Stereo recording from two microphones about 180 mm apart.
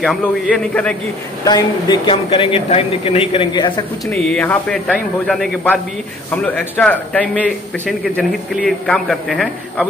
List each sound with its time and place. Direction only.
0.0 s speech: 5° left (ahead or behind)
1.4 s speech: 20° left (ahead or behind)
4.1 s a man's voice: 5° left (ahead or behind)